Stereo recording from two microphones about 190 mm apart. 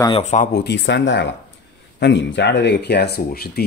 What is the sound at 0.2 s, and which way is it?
Speech, 40° left (ahead or behind).